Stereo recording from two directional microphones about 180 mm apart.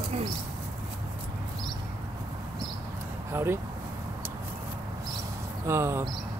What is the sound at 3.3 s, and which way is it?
Speech, 15° right (ahead or behind).